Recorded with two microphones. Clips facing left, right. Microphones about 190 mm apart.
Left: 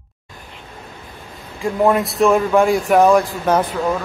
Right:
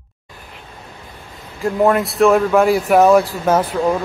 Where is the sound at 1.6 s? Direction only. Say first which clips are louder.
Right 1 dB; centre (ahead or behind).